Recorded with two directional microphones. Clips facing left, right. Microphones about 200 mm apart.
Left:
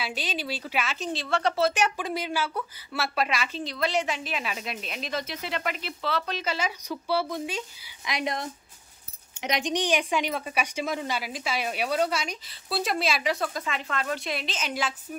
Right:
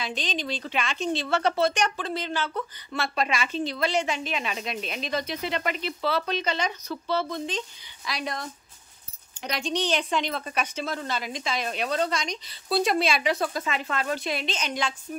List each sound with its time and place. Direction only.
0.0 s a woman's voice: 10° left (ahead or behind)
8.1 s a woman's voice: 20° left (ahead or behind); by 15.0 s 5° left (ahead or behind)